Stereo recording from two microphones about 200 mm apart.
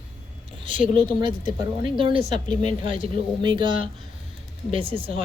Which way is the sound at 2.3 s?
35° left (ahead or behind).